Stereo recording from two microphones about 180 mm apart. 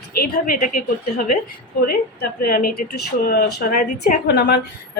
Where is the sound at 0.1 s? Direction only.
55° left (ahead or behind).